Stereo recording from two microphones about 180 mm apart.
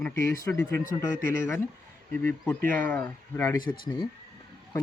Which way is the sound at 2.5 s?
10° left (ahead or behind).